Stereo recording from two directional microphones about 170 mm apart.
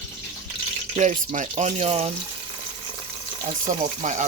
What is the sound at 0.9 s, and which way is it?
Speech, 45° right (ahead or behind).